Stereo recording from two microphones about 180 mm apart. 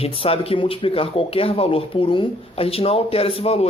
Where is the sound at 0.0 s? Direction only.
30° left (ahead or behind).